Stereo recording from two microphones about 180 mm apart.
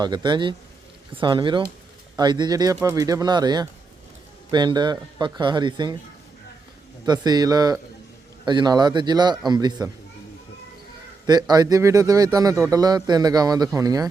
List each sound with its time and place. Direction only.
0.0 s speech: 25° right (ahead or behind)
7.0 s speech: 20° right (ahead or behind)
11.3 s speech: 20° right (ahead or behind)